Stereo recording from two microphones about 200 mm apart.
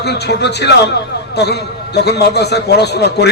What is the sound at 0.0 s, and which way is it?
A man's voice, 55° left (ahead or behind).